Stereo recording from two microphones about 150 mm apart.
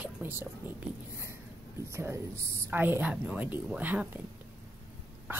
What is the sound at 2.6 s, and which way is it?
Speech, 15° right (ahead or behind).